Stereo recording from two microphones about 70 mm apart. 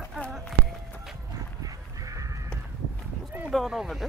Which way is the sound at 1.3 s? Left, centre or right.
Right.